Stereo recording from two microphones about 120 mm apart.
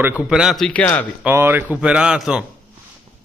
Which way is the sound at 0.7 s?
10° left (ahead or behind).